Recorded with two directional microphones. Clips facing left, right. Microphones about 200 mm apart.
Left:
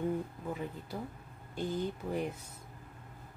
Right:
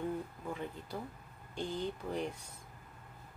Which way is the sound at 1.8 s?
5° left (ahead or behind).